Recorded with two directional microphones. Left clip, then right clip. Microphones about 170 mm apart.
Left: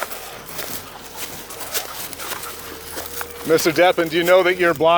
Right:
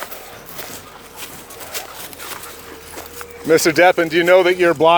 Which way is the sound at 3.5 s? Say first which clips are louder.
Right 3 dB; 55° right (ahead or behind).